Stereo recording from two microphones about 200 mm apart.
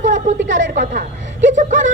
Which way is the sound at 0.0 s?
40° right (ahead or behind).